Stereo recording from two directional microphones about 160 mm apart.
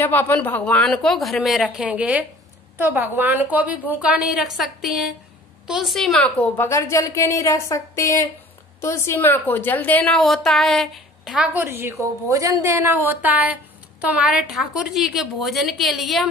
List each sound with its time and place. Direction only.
0.0 s a woman's voice: 10° left (ahead or behind)